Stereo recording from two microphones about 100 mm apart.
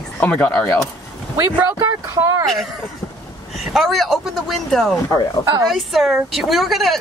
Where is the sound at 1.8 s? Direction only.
30° right (ahead or behind).